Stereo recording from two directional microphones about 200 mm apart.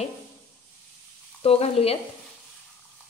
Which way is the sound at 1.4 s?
30° left (ahead or behind).